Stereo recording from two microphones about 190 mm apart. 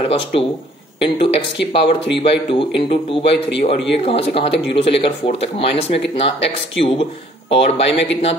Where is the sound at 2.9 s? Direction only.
30° left (ahead or behind).